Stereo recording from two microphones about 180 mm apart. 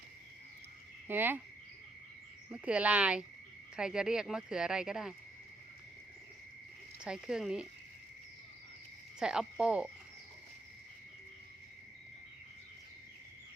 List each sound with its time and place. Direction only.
1.0 s speech: 10° right (ahead or behind)
2.5 s speech: 5° right (ahead or behind)
7.0 s speech: 5° right (ahead or behind)
9.1 s speech: 5° right (ahead or behind)